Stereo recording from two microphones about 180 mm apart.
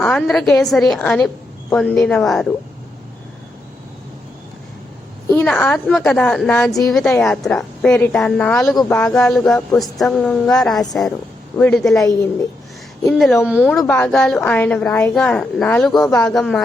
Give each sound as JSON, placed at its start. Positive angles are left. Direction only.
{"t": 0.0, "sound": "a woman's voice", "side_deg": 0}
{"t": 5.3, "sound": "a woman's voice", "side_deg": 10}
{"t": 6.7, "sound": "a woman's voice", "side_deg": 20}
{"t": 6.9, "sound": "a woman's voice", "side_deg": 5}
{"t": 13.1, "sound": "a woman's voice", "side_deg": 0}
{"t": 13.7, "sound": "a woman's voice", "side_deg": 5}